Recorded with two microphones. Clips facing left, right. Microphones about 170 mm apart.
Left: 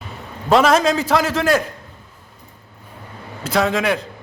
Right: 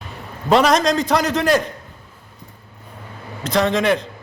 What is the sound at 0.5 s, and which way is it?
A man's voice, 5° left (ahead or behind).